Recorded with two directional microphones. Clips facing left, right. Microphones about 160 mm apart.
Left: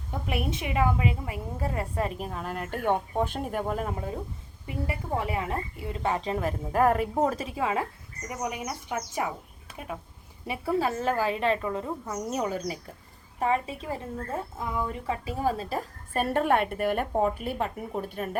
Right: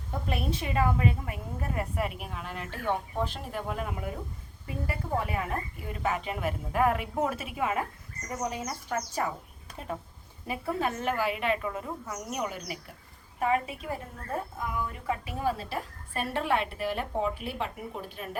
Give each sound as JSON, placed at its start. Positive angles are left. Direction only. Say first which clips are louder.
{"t": 0.6, "sound": "a woman's voice", "louder": "left 1 dB", "side_deg": 15}
{"t": 4.6, "sound": "a woman's voice", "louder": "left 2 dB", "side_deg": 25}
{"t": 8.3, "sound": "speech", "louder": "even", "side_deg": 15}
{"t": 10.4, "sound": "a woman's voice", "louder": "left 3 dB", "side_deg": 30}